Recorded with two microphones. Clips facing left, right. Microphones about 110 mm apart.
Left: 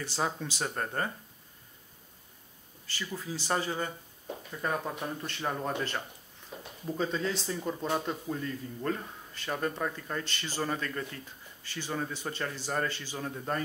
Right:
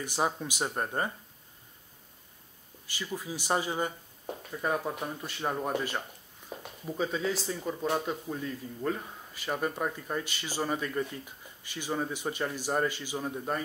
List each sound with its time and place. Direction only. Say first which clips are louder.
0.0 s speech: right 2 dB; 15° right (ahead or behind)
2.9 s speech: right 1 dB; 15° right (ahead or behind)